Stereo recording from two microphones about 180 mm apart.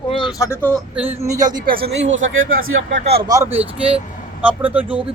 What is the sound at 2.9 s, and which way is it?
Speech, 35° right (ahead or behind).